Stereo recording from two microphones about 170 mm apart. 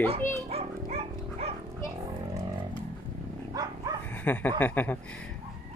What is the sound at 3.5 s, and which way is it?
Dog, 25° right (ahead or behind).